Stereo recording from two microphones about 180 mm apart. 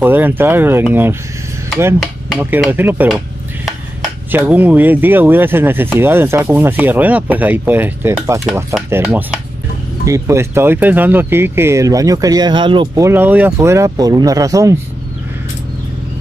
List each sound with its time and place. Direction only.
0.0 s speech: 10° right (ahead or behind)
2.5 s speech: 10° right (ahead or behind)
4.3 s speech: 10° right (ahead or behind)